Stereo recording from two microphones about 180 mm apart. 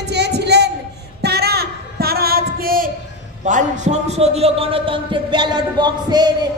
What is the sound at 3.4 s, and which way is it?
A man's voice, 40° right (ahead or behind).